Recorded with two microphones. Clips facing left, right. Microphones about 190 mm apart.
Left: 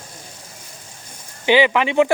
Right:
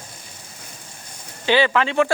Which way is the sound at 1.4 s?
15° left (ahead or behind).